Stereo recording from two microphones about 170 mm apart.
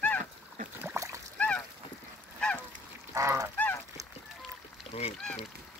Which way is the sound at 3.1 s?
15° right (ahead or behind).